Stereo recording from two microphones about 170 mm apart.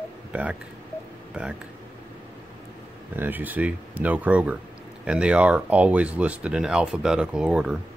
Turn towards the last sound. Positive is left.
turn(degrees=-5)  # may be behind; listen again after turning